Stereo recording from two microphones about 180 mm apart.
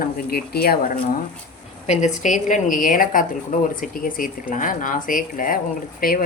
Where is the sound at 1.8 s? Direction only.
40° left (ahead or behind).